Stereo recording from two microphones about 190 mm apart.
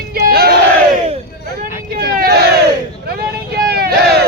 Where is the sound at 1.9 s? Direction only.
50° right (ahead or behind).